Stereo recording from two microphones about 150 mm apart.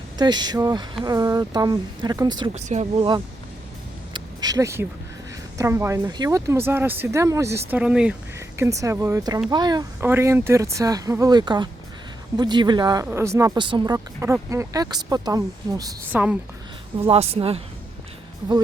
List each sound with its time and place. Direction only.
0.2 s speech: 30° right (ahead or behind)
2.6 s speech: 50° right (ahead or behind)
4.1 s a sound: 25° right (ahead or behind)
5.5 s speech: 20° right (ahead or behind)
7.7 s speech: 10° right (ahead or behind)
8.4 s speech: 20° right (ahead or behind)
10.0 s speech: 15° right (ahead or behind)
13.6 s speech: 30° right (ahead or behind)
16.1 s speech: 10° right (ahead or behind)
17.1 s speech: 40° right (ahead or behind)